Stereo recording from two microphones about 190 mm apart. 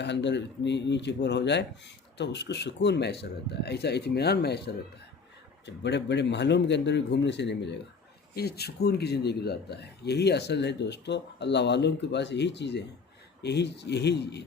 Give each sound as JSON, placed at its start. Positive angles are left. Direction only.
{"t": 0.0, "sound": "a man's voice", "side_deg": 65}